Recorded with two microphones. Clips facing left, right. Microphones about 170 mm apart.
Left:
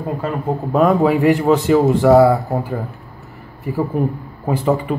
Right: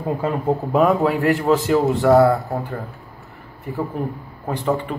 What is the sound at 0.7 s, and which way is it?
Speech, centre (ahead or behind).